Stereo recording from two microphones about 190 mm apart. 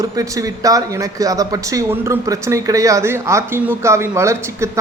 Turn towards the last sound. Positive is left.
turn(degrees=-15)  # may be behind; listen again after turning